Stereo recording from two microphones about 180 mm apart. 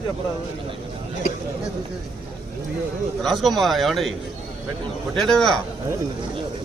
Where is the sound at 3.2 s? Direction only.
Centre (ahead or behind).